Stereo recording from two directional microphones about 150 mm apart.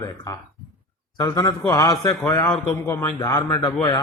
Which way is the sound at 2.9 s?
15° left (ahead or behind).